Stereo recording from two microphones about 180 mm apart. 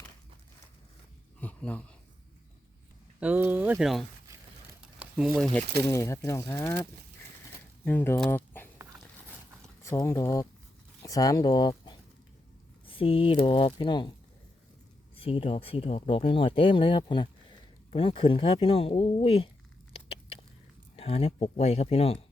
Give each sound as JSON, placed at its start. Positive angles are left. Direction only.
{"t": 1.4, "sound": "a sound", "side_deg": 10}
{"t": 3.2, "sound": "speech", "side_deg": -10}
{"t": 4.9, "sound": "a sound", "side_deg": -5}
{"t": 5.8, "sound": "speech", "side_deg": 15}
{"t": 7.9, "sound": "speech", "side_deg": 10}
{"t": 9.8, "sound": "speech", "side_deg": 15}
{"t": 15.1, "sound": "speech", "side_deg": 30}
{"t": 19.9, "sound": "rodents", "side_deg": 35}
{"t": 20.9, "sound": "speech", "side_deg": 30}